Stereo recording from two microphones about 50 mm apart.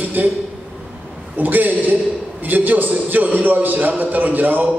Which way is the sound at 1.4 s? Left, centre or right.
Right.